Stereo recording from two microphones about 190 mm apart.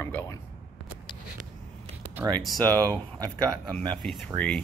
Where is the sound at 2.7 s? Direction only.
20° right (ahead or behind).